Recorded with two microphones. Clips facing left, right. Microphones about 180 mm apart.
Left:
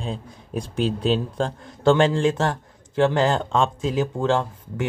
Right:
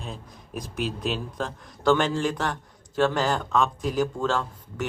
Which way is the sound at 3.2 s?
25° left (ahead or behind).